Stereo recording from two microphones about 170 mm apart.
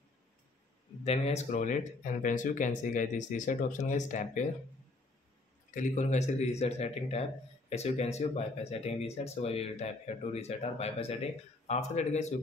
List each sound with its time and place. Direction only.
1.0 s speech: 40° left (ahead or behind)
5.8 s speech: 45° left (ahead or behind)